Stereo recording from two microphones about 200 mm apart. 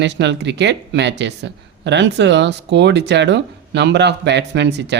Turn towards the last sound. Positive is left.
turn(degrees=-60)  # may be behind; listen again after turning